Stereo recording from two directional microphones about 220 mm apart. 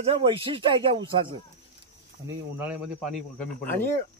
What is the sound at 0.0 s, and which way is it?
Speech, 25° right (ahead or behind).